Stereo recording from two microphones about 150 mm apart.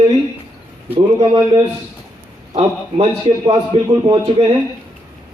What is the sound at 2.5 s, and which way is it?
A man's voice, 35° right (ahead or behind).